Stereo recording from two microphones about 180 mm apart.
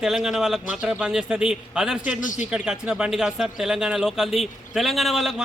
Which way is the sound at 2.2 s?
45° left (ahead or behind).